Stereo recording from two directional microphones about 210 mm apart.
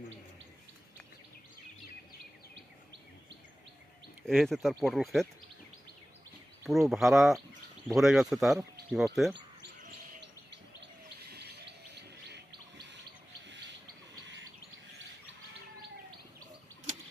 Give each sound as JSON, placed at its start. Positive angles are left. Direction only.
{"t": 4.3, "sound": "speech", "side_deg": 0}
{"t": 6.7, "sound": "speech", "side_deg": 0}
{"t": 11.3, "sound": "chirp", "side_deg": -50}
{"t": 14.9, "sound": "chirp", "side_deg": -60}